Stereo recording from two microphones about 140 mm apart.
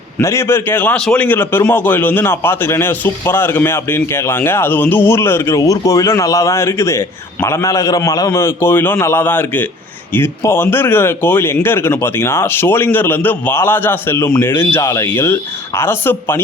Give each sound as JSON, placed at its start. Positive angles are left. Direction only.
{"t": 0.2, "sound": "a man's voice", "side_deg": 20}